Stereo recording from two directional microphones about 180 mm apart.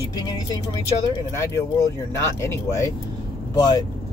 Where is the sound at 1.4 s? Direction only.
15° left (ahead or behind).